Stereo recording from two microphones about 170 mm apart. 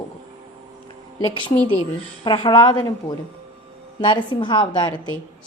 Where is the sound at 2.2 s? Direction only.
25° left (ahead or behind).